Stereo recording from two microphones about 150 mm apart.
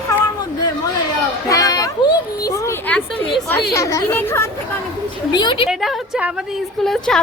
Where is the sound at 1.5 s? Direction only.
25° left (ahead or behind).